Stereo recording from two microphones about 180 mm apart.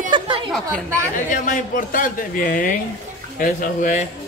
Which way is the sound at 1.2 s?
50° left (ahead or behind).